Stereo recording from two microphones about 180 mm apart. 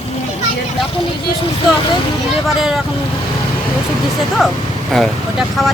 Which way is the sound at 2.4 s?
Centre (ahead or behind).